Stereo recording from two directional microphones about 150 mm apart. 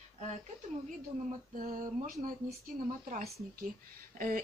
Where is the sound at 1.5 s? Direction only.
65° right (ahead or behind).